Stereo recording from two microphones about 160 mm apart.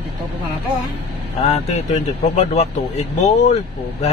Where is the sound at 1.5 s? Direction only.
45° left (ahead or behind).